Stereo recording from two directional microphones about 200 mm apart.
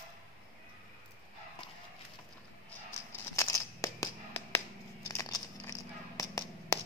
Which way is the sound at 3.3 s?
15° left (ahead or behind).